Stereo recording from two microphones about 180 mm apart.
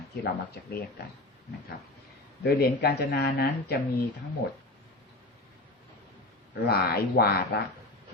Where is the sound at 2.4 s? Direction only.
60° left (ahead or behind).